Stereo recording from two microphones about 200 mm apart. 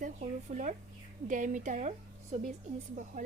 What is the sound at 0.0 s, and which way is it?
A woman's voice, 40° right (ahead or behind).